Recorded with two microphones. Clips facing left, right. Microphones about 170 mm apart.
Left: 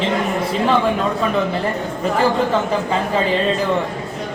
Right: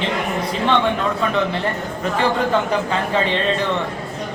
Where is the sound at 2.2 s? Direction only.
Centre (ahead or behind).